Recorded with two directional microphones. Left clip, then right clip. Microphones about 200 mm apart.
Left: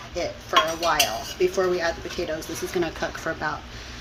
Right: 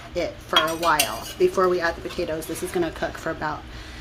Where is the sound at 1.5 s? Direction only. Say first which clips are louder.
Right 2 dB; 15° right (ahead or behind).